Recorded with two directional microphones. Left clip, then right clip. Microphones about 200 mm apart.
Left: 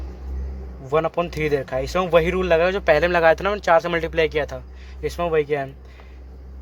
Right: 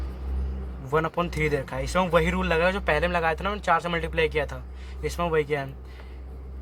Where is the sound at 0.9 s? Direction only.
15° left (ahead or behind).